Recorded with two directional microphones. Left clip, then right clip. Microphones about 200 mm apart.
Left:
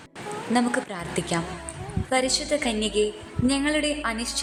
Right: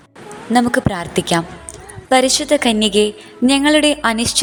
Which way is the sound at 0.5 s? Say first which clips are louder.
Right 10 dB; 30° right (ahead or behind).